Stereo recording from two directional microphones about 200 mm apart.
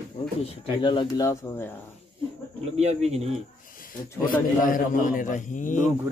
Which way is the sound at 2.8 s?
35° right (ahead or behind).